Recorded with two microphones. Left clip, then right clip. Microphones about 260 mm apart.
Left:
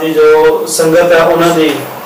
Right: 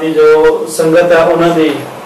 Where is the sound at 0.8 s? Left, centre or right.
Centre.